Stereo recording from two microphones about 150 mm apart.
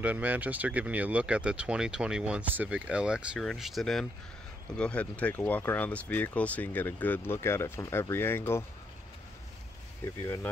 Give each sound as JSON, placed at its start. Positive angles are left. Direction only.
{"t": 0.0, "sound": "speech", "side_deg": -10}
{"t": 10.2, "sound": "speech", "side_deg": 20}